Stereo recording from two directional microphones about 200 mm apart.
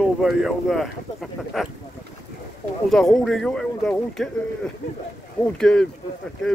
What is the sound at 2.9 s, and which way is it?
Speech, centre (ahead or behind).